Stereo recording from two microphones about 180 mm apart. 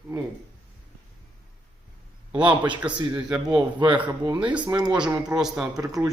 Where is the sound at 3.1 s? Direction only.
5° right (ahead or behind).